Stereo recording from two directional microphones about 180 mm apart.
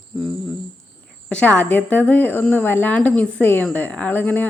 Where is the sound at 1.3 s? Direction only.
10° left (ahead or behind).